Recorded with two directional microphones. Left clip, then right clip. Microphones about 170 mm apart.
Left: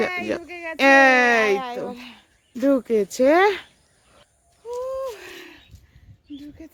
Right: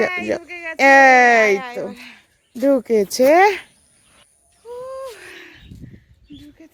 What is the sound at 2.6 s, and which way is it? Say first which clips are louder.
Speech: right 4 dB; 20° right (ahead or behind).